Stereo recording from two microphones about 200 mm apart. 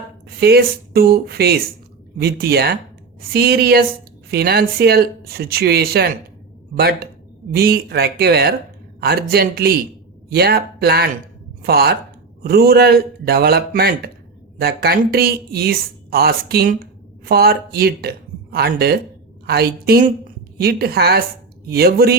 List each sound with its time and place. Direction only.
0.3 s a woman's voice: 50° right (ahead or behind)